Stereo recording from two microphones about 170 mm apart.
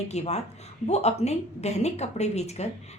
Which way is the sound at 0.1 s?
40° left (ahead or behind).